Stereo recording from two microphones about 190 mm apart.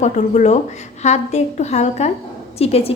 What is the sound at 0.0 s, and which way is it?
A woman's voice, 40° left (ahead or behind).